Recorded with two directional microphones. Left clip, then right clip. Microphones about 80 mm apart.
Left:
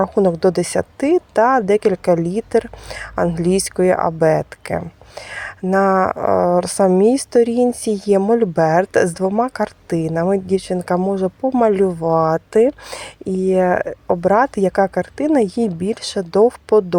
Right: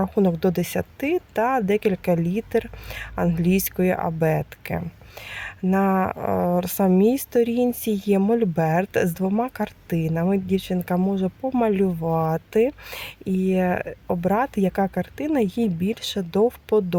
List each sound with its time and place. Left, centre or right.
0.0 s speech: left
10.1 s speech: left
10.4 s speech: left
11.4 s speech: left